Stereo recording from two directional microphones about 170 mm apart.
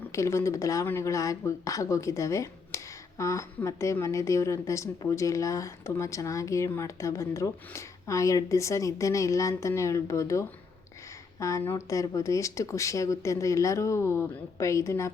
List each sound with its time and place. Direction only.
0.1 s speech: 15° left (ahead or behind)